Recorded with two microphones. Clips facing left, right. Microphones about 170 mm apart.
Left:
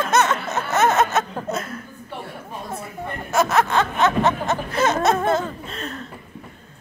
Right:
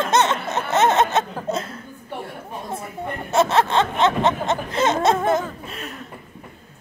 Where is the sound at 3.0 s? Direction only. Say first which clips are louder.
Right 2 dB; 25° right (ahead or behind).